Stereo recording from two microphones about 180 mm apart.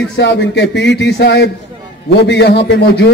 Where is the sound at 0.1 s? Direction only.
75° left (ahead or behind).